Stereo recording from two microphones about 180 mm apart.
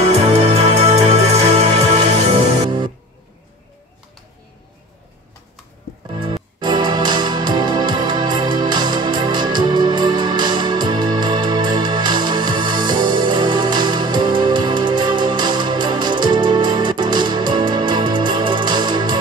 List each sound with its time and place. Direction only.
0.0 s music: 35° right (ahead or behind)
6.0 s music: 25° right (ahead or behind)